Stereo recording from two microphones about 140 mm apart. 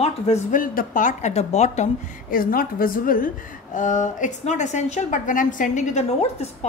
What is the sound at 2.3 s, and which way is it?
A woman's voice, 90° left.